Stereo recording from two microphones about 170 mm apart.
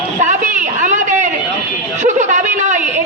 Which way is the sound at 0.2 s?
45° right (ahead or behind).